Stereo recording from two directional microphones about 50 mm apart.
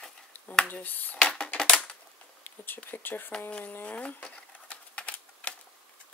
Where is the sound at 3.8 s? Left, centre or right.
Left.